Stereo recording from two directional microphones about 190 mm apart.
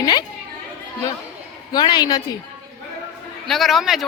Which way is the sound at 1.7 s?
20° left (ahead or behind).